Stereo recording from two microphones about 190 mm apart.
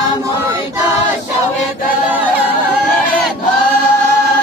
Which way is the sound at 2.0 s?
10° right (ahead or behind).